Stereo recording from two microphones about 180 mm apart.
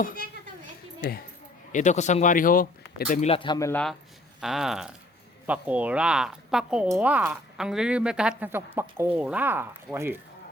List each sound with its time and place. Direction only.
1.7 s speech: 40° left (ahead or behind)
3.1 s speech: 35° left (ahead or behind)
3.7 s speech: 5° left (ahead or behind); by 10.2 s 10° right (ahead or behind)